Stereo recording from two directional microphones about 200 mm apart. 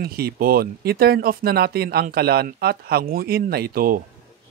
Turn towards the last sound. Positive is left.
turn(degrees=-50)  # may be behind; listen again after turning